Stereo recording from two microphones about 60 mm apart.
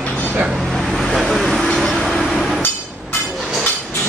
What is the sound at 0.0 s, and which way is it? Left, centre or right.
Vehicle, left.